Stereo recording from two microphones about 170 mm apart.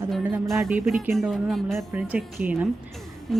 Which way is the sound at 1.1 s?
Centre (ahead or behind).